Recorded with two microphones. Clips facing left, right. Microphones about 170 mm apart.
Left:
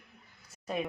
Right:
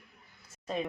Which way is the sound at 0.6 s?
10° left (ahead or behind).